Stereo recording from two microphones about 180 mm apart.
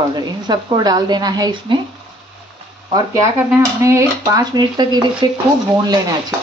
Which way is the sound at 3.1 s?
15° right (ahead or behind).